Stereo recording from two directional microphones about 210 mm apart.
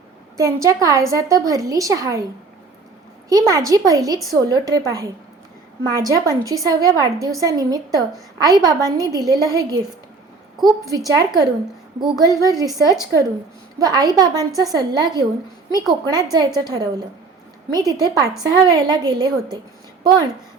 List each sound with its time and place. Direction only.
0.3 s a woman's voice: 15° right (ahead or behind)
3.2 s a woman's voice: 15° right (ahead or behind)